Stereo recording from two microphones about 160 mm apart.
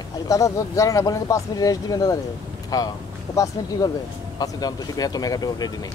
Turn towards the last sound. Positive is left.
turn(degrees=25)  # may be behind; listen again after turning